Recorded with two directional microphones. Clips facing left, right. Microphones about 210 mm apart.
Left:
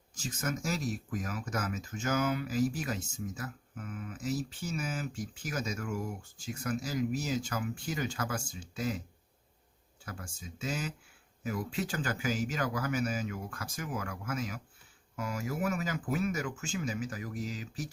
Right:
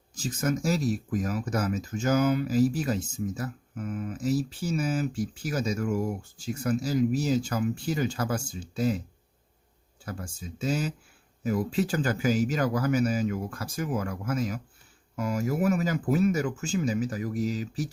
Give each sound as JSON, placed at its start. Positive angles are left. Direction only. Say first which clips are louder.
{"t": 0.2, "sound": "speech", "louder": "right 8 dB", "side_deg": -35}
{"t": 10.1, "sound": "speech", "louder": "right 7 dB", "side_deg": -35}